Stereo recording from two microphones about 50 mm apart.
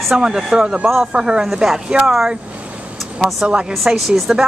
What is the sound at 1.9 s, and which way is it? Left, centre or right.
Speech, centre.